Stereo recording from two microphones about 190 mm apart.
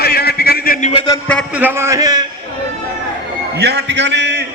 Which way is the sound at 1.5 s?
10° right (ahead or behind).